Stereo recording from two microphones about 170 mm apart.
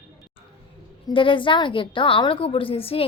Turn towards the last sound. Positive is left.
turn(degrees=35)  # may be behind; listen again after turning